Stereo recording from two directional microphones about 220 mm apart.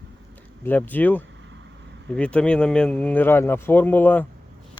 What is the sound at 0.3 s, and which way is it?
Speech, 10° left (ahead or behind).